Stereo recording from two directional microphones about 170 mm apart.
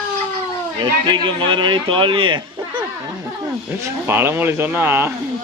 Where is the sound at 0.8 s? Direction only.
25° right (ahead or behind).